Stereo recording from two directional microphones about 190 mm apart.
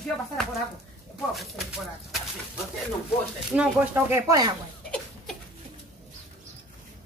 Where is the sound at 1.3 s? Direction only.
Centre (ahead or behind).